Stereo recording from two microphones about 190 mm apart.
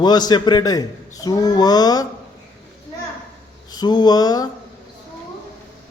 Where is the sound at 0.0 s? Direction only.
20° left (ahead or behind).